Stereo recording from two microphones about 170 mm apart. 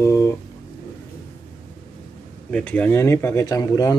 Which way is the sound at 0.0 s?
15° left (ahead or behind).